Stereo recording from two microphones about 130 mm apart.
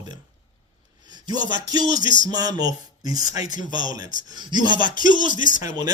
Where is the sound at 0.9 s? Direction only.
35° right (ahead or behind).